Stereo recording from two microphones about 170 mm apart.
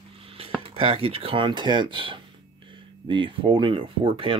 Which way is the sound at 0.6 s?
35° right (ahead or behind).